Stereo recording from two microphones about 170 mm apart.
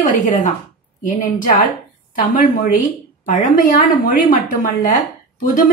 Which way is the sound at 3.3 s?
45° left (ahead or behind).